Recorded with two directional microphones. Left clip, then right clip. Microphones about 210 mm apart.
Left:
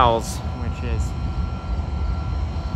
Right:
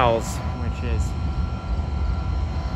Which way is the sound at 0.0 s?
20° left (ahead or behind).